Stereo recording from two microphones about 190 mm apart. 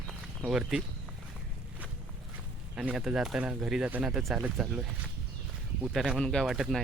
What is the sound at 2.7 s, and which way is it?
Speech, 5° right (ahead or behind).